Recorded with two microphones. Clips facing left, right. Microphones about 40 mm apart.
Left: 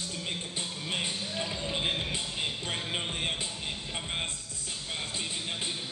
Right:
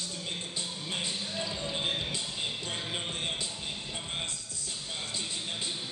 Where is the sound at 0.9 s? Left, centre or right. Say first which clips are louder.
Left 2 dB; left.